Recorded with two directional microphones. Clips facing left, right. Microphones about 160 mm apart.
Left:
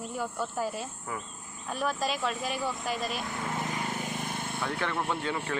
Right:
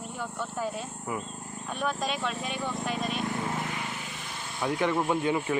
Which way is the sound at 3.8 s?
45° left (ahead or behind).